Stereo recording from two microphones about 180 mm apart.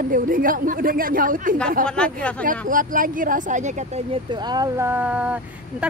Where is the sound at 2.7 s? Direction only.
50° right (ahead or behind).